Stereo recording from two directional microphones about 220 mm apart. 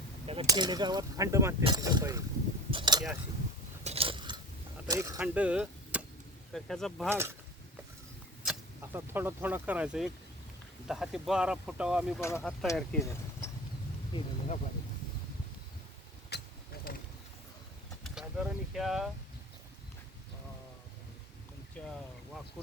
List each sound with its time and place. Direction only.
0.3 s speech: 20° right (ahead or behind)
2.6 s a sound: 20° right (ahead or behind)
4.9 s speech: 15° right (ahead or behind); by 7.1 s centre (ahead or behind)
7.1 s speech: 10° right (ahead or behind)
8.4 s speech: 10° right (ahead or behind)
12.2 s speech: 10° left (ahead or behind)
14.1 s speech: 30° left (ahead or behind)
16.3 s vehicle: 50° left (ahead or behind)
16.9 s a sound: 45° left (ahead or behind)
18.0 s vehicle: centre (ahead or behind)
21.8 s boat: 5° left (ahead or behind)